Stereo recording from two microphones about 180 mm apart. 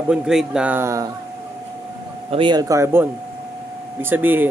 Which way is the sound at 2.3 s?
25° right (ahead or behind).